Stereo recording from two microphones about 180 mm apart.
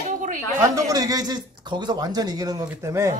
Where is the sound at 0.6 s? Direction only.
20° right (ahead or behind).